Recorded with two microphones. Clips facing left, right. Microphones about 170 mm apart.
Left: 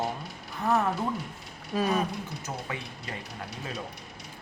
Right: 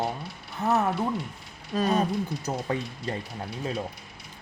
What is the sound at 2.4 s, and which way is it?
Speech, 35° right (ahead or behind).